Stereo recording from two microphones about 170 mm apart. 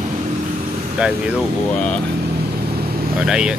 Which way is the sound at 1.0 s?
5° right (ahead or behind).